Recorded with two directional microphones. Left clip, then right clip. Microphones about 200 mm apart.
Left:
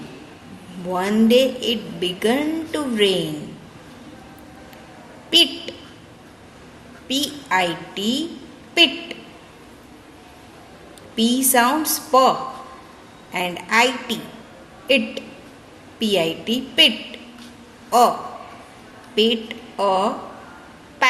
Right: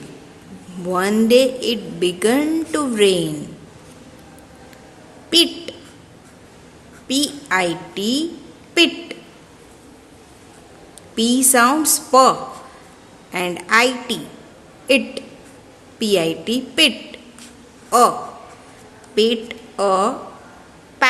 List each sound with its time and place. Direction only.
0.9 s a woman's voice: 25° right (ahead or behind)
5.3 s a sound: 25° right (ahead or behind)
7.1 s a woman's voice: 25° right (ahead or behind)
11.1 s a woman's voice: 25° right (ahead or behind)
19.1 s a woman's voice: 25° right (ahead or behind)
21.0 s quack: 25° right (ahead or behind)